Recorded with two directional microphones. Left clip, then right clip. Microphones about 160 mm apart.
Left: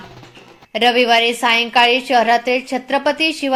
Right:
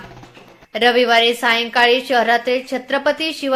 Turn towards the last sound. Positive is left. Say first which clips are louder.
# left 2 dB
turn(degrees=0)  # may be behind; listen again after turning